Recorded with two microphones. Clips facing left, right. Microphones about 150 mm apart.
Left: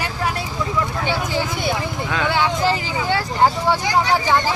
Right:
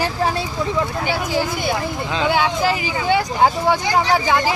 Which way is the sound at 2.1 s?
15° right (ahead or behind).